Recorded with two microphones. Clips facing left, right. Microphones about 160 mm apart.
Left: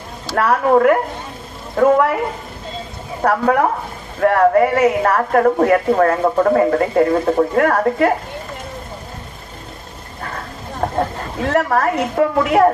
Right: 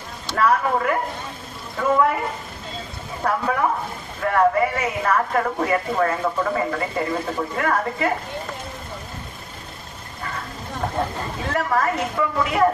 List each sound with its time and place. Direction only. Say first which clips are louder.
0.4 s a woman's voice: left 6 dB; 60° left (ahead or behind)
3.2 s a woman's voice: left 7 dB; 60° left (ahead or behind)
10.8 s a sound: left 5 dB; 45° left (ahead or behind)
11.5 s a woman's voice: left 5 dB; 60° left (ahead or behind)